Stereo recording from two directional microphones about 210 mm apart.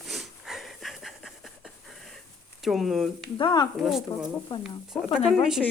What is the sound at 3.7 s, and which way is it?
Speech, centre (ahead or behind).